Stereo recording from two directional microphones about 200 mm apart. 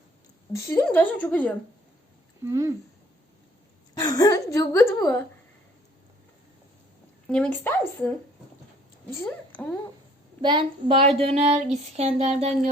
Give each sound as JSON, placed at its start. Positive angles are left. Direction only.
{"t": 0.5, "sound": "a woman's voice", "side_deg": 15}
{"t": 2.4, "sound": "speech", "side_deg": -15}
{"t": 3.9, "sound": "a woman's voice", "side_deg": 20}
{"t": 7.3, "sound": "a woman's voice", "side_deg": 5}
{"t": 9.6, "sound": "a woman's voice", "side_deg": 10}
{"t": 10.4, "sound": "a sound", "side_deg": -25}